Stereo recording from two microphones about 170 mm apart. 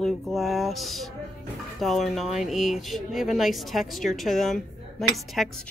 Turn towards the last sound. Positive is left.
turn(degrees=0)  # may be behind; listen again after turning